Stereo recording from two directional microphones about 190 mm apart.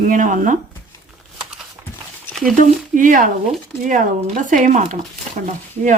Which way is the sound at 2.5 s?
45° right (ahead or behind).